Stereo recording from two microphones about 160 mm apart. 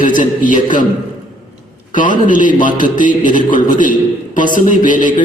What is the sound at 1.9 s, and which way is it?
A man's voice, 55° left (ahead or behind).